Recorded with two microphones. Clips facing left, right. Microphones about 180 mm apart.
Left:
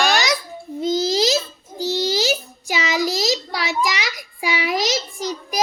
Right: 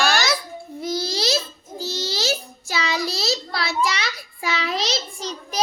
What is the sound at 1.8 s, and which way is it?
Child singing, 15° left (ahead or behind).